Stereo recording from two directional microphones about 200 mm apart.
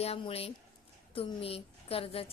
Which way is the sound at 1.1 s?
30° left (ahead or behind).